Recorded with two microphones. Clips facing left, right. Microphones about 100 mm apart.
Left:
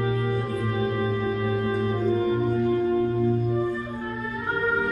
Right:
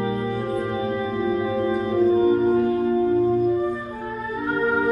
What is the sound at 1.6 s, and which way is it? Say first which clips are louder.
Music: right 8 dB; 30° right (ahead or behind).